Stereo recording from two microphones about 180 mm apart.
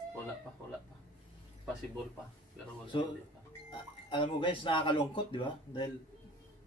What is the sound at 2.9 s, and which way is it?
Speech, 30° left (ahead or behind).